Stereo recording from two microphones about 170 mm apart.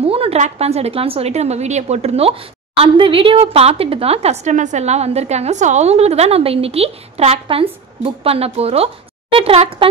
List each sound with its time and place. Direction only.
0.0 s a woman's voice: 35° right (ahead or behind)